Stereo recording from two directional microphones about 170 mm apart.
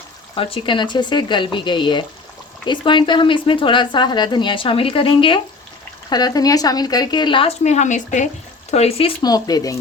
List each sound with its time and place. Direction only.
0.3 s speech: 30° left (ahead or behind)